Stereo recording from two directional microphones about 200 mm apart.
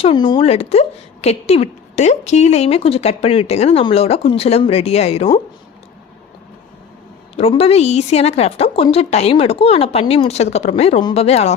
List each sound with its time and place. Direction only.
0.0 s a woman's voice: 25° left (ahead or behind)
7.3 s a woman's voice: 30° left (ahead or behind)